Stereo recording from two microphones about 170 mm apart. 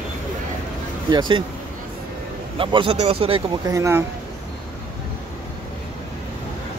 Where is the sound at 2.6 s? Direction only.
30° right (ahead or behind).